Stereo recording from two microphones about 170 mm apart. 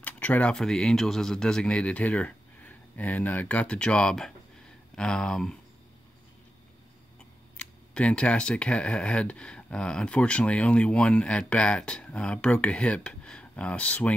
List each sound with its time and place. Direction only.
0.0 s speech: 10° left (ahead or behind)
7.5 s speech: 5° left (ahead or behind)